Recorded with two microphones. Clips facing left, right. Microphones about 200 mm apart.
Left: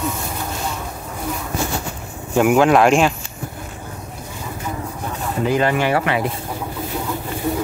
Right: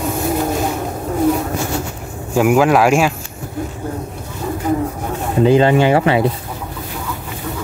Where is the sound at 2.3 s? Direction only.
5° right (ahead or behind).